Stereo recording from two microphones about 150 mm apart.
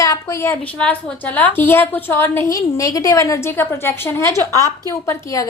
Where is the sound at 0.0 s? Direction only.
20° left (ahead or behind).